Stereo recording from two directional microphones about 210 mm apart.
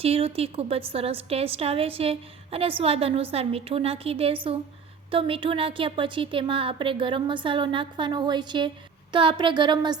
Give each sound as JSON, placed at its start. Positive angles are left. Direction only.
{"t": 0.0, "sound": "a woman's voice", "side_deg": -25}